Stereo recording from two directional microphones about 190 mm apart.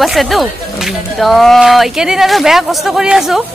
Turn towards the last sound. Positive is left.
turn(degrees=0)  # may be behind; listen again after turning